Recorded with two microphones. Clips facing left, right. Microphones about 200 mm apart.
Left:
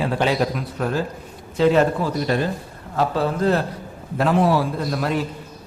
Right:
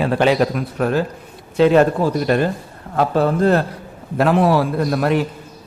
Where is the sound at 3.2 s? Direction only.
55° right (ahead or behind).